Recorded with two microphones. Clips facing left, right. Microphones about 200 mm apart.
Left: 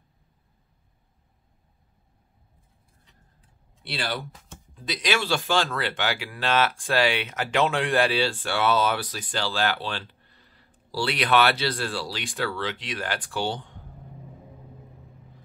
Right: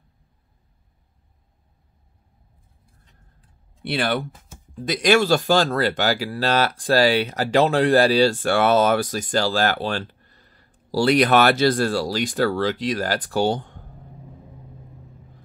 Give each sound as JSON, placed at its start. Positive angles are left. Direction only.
{"t": 3.8, "sound": "speech", "side_deg": -55}